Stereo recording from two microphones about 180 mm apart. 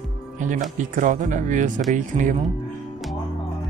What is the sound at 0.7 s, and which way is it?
Speech, 45° right (ahead or behind).